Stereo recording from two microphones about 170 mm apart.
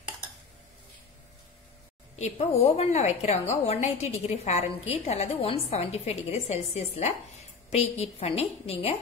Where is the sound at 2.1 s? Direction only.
40° left (ahead or behind).